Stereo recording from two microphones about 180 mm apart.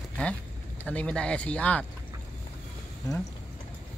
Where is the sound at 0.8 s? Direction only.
10° left (ahead or behind).